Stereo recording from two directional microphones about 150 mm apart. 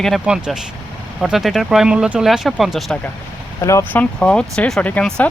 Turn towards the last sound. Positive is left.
turn(degrees=10)  # may be behind; listen again after turning